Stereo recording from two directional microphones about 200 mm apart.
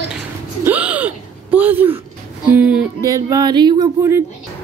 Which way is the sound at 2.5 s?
5° right (ahead or behind).